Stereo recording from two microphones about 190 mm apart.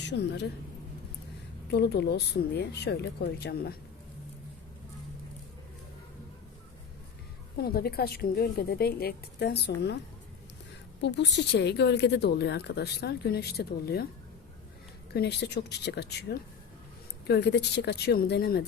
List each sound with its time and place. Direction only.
0.1 s speech: 65° left (ahead or behind)
1.7 s speech: 60° left (ahead or behind)
7.6 s speech: 55° left (ahead or behind)
11.0 s speech: 65° left (ahead or behind)
15.1 s speech: 60° left (ahead or behind)